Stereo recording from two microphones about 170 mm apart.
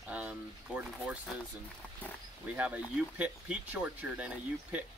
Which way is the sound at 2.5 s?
10° right (ahead or behind).